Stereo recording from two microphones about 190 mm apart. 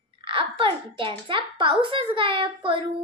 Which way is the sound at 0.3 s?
25° right (ahead or behind).